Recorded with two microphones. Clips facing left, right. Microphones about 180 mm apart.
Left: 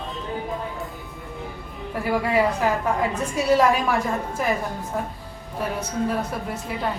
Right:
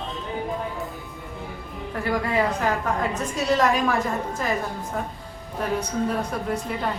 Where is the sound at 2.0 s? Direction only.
10° left (ahead or behind).